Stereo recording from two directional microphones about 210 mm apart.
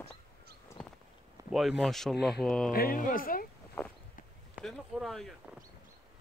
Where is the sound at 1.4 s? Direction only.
Centre (ahead or behind).